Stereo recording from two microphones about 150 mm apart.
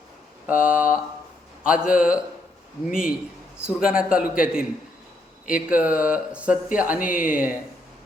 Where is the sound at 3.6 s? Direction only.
5° right (ahead or behind).